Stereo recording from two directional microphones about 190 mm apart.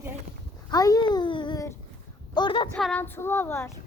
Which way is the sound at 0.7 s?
20° left (ahead or behind).